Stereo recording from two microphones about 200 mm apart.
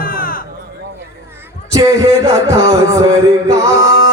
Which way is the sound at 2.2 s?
15° right (ahead or behind).